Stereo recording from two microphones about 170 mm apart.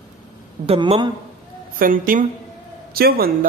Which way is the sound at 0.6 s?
35° right (ahead or behind).